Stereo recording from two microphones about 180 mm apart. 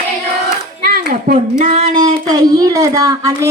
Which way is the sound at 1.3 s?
45° right (ahead or behind).